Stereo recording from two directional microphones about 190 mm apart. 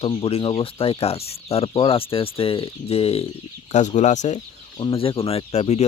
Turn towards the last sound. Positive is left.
turn(degrees=35)  # may be behind; listen again after turning